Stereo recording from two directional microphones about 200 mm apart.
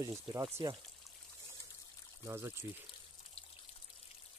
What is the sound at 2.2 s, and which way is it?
Speech, 15° right (ahead or behind).